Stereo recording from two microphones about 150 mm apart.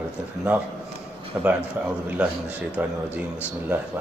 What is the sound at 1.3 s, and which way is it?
A man's voice, 10° right (ahead or behind).